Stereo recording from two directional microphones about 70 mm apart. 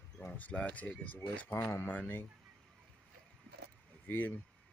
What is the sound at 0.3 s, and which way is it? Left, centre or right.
Speech, centre.